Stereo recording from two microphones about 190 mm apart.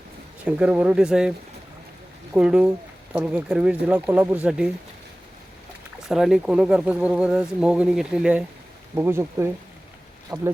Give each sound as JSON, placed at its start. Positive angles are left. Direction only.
{"t": 0.4, "sound": "speech", "side_deg": -5}
{"t": 2.3, "sound": "speech", "side_deg": -5}
{"t": 6.1, "sound": "speech", "side_deg": -5}